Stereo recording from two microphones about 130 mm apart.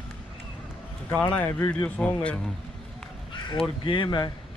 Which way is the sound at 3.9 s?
35° left (ahead or behind).